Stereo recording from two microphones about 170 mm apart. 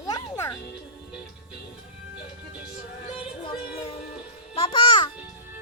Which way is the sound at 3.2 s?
30° left (ahead or behind).